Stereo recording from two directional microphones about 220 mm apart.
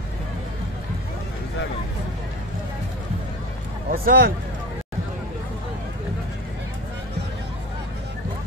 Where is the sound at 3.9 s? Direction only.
40° right (ahead or behind).